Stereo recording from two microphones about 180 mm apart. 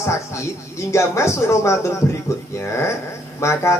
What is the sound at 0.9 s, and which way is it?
Speech, 15° left (ahead or behind).